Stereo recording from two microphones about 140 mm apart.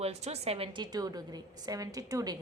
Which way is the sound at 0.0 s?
50° right (ahead or behind).